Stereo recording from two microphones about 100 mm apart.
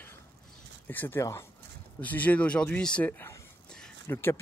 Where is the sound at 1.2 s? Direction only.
30° left (ahead or behind).